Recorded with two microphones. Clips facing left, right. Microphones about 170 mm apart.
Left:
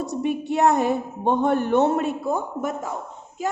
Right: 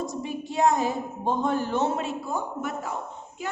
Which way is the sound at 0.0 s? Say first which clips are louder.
Left 6 dB; 65° left (ahead or behind).